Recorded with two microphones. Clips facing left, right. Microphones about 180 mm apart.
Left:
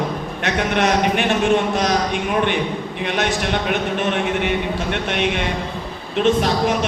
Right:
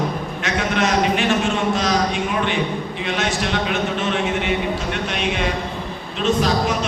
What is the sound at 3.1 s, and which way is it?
Speech, 55° left (ahead or behind).